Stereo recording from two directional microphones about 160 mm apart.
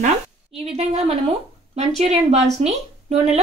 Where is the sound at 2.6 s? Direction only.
45° right (ahead or behind).